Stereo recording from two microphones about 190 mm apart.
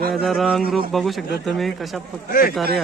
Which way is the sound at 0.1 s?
Centre (ahead or behind).